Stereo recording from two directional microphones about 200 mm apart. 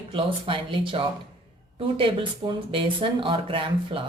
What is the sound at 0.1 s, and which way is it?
Speech, 25° right (ahead or behind).